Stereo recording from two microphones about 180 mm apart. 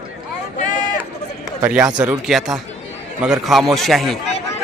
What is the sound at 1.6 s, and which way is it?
A man's voice, 5° right (ahead or behind).